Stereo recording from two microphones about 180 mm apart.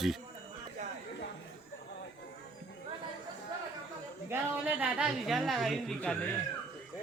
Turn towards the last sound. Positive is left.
turn(degrees=5)  # may be behind; listen again after turning